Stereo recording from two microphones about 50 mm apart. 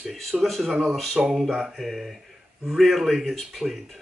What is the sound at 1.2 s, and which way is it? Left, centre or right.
Speech, centre.